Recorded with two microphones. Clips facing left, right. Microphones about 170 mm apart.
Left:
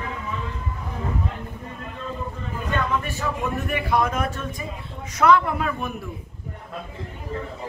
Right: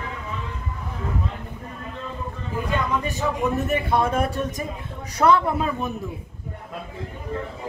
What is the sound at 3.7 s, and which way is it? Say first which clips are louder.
Speech: right 1 dB; 25° right (ahead or behind).